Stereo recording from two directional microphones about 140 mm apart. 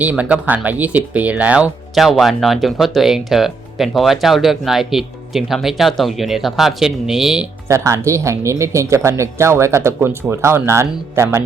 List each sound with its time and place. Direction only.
0.0 s speech: 10° right (ahead or behind)
7.7 s speech: 20° right (ahead or behind)